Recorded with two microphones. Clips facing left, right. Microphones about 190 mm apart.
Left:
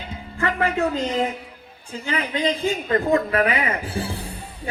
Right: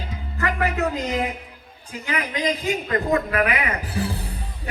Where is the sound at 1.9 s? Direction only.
30° left (ahead or behind).